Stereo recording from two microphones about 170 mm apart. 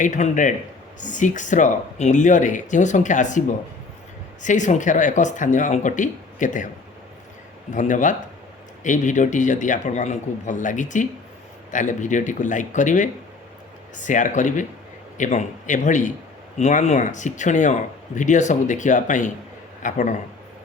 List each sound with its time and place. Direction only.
0.0 s speech: 45° left (ahead or behind)
4.4 s speech: 45° left (ahead or behind)
7.7 s speech: 50° left (ahead or behind)